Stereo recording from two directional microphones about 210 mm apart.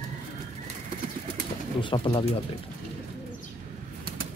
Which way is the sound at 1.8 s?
25° left (ahead or behind).